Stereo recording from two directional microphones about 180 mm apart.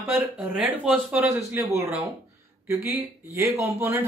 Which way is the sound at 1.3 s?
15° right (ahead or behind).